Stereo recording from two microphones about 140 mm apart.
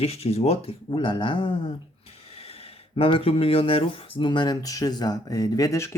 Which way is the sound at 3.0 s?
40° left (ahead or behind).